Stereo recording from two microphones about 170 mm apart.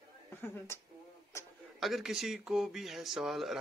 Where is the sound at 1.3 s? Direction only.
15° left (ahead or behind).